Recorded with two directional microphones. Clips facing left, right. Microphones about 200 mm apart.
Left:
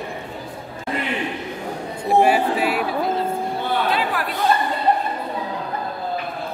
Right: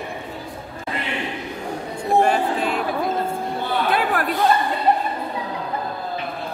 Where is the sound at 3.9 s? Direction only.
50° right (ahead or behind).